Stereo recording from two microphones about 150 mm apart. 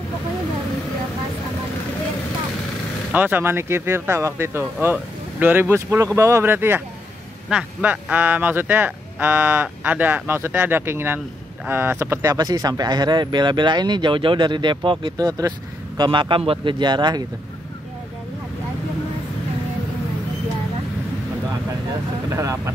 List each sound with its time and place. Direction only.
3.1 s speech: 10° right (ahead or behind); by 17.2 s 30° right (ahead or behind)
22.3 s speech: 20° right (ahead or behind)